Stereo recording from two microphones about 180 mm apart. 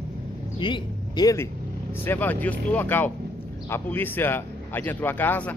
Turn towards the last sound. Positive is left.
turn(degrees=10)  # may be behind; listen again after turning